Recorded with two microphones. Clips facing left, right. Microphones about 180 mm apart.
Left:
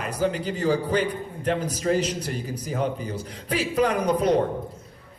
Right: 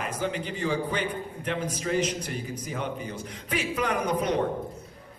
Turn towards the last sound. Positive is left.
turn(degrees=35)  # may be behind; listen again after turning